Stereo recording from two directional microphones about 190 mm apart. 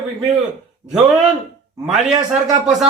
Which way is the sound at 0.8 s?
10° right (ahead or behind).